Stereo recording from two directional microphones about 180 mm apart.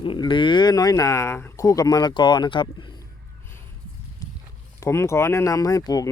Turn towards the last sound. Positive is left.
turn(degrees=20)  # may be behind; listen again after turning